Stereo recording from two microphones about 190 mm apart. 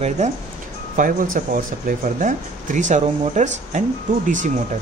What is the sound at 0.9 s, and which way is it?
Speech, 45° right (ahead or behind).